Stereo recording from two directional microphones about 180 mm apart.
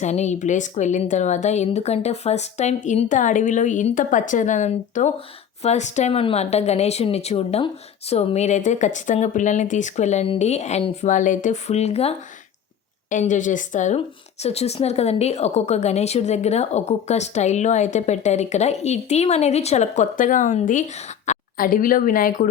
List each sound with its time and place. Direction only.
0.0 s a woman's voice: 40° left (ahead or behind)